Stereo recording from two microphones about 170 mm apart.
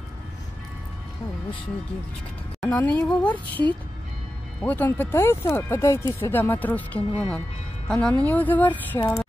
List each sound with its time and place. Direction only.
2.6 s a woman's voice: 10° left (ahead or behind)